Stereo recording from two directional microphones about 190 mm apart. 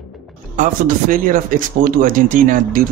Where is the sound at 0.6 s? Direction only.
45° right (ahead or behind).